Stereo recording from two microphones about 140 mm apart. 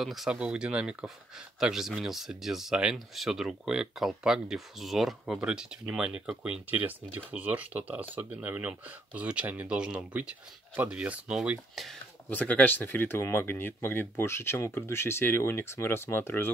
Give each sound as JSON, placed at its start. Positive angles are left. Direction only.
{"t": 0.0, "sound": "speech", "side_deg": 0}
{"t": 12.3, "sound": "speech", "side_deg": 10}